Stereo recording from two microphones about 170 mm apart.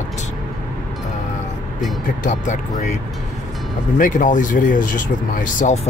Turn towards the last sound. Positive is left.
turn(degrees=45)  # may be behind; listen again after turning